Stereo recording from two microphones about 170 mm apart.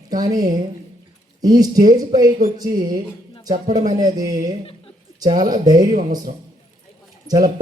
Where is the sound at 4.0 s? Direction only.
20° right (ahead or behind).